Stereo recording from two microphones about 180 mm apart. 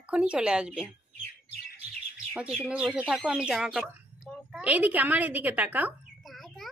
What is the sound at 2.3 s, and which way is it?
A woman's voice, 5° right (ahead or behind).